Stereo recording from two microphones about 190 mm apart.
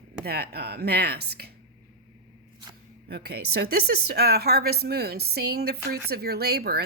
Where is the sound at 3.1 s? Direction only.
55° right (ahead or behind).